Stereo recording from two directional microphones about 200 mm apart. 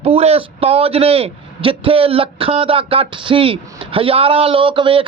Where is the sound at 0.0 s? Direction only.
30° right (ahead or behind).